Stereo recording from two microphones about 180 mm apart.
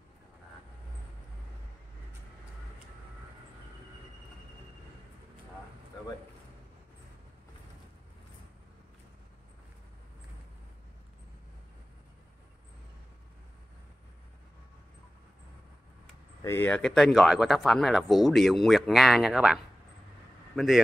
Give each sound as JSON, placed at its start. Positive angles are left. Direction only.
{"t": 16.4, "sound": "a man's voice", "side_deg": 10}